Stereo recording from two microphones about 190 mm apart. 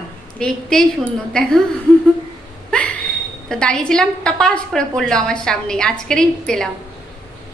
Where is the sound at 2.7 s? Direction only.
5° left (ahead or behind).